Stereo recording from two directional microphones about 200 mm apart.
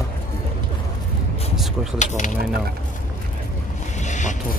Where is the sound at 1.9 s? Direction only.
35° left (ahead or behind).